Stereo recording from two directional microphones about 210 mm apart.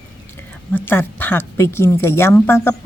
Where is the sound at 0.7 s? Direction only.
10° left (ahead or behind).